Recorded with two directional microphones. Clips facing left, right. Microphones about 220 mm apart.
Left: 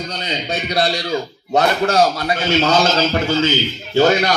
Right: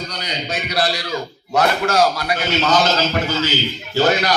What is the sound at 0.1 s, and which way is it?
A man's voice, 25° left (ahead or behind).